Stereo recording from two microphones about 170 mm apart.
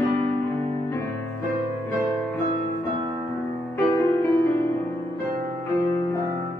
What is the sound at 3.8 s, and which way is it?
Music, 15° left (ahead or behind).